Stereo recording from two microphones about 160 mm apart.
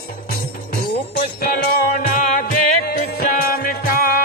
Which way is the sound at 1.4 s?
70° left (ahead or behind).